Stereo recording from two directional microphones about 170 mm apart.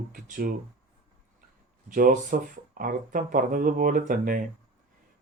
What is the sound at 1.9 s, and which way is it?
Speech, 55° right (ahead or behind).